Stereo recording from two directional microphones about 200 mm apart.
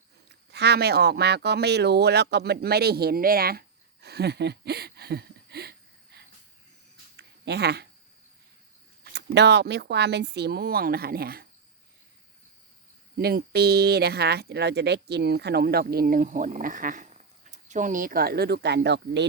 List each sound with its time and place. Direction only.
0.3 s speech: 55° right (ahead or behind)
4.0 s a sound: 55° right (ahead or behind)
9.1 s speech: 60° right (ahead or behind)
13.1 s speech: 50° right (ahead or behind)